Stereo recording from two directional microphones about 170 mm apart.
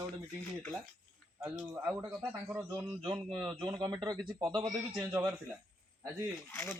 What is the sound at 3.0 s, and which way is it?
Speech, 30° right (ahead or behind).